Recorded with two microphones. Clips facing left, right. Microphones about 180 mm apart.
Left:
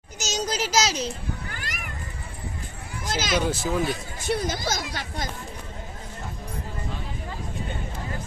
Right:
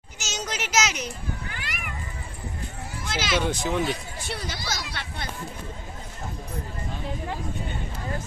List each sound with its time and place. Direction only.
0.2 s a sound: 35° left (ahead or behind)
1.5 s cat: 45° left (ahead or behind)
3.1 s speech: 45° left (ahead or behind)
3.3 s speech: centre (ahead or behind)
4.2 s speech: 45° left (ahead or behind)